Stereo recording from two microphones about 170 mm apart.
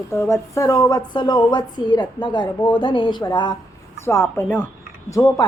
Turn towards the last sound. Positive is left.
turn(degrees=20)  # may be behind; listen again after turning